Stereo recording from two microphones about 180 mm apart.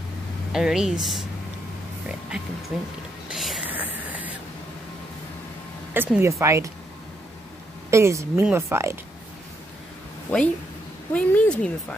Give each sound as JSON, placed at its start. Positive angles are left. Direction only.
{"t": 0.5, "sound": "speech", "side_deg": -5}
{"t": 3.3, "sound": "whispering", "side_deg": -5}
{"t": 5.9, "sound": "speech", "side_deg": -10}
{"t": 7.9, "sound": "speech", "side_deg": -15}
{"t": 11.1, "sound": "speech", "side_deg": 5}